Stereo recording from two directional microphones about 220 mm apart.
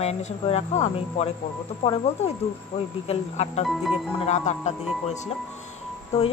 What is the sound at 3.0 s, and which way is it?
Speech, 30° left (ahead or behind).